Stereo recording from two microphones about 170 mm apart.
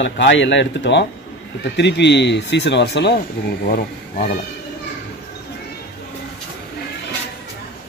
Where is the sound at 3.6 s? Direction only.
65° left (ahead or behind).